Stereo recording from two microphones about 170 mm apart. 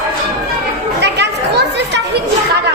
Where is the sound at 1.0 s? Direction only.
80° right.